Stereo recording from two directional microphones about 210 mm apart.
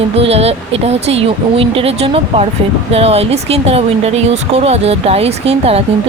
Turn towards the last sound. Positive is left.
turn(degrees=-30)  # may be behind; listen again after turning